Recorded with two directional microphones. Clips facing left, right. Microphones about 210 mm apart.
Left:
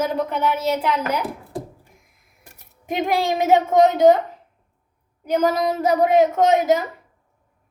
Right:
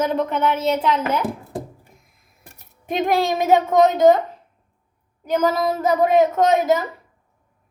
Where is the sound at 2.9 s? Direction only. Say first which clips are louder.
Right 1 dB; 15° left (ahead or behind).